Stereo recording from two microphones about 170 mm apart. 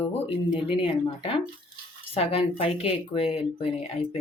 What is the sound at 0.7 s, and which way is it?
Speech, 30° left (ahead or behind).